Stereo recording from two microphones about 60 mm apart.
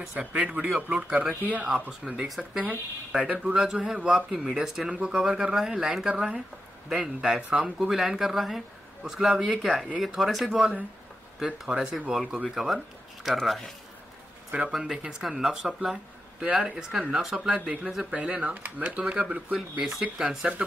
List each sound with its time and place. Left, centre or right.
0.0 s speech: centre
0.3 s speech: right
1.7 s speech: centre
3.2 s speech: right; by 13.4 s centre
14.7 s speech: centre
17.6 s speech: right